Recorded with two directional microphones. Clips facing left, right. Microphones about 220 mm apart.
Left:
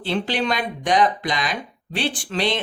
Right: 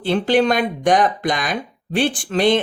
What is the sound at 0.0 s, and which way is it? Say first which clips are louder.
Speech: right 7 dB; 50° right (ahead or behind).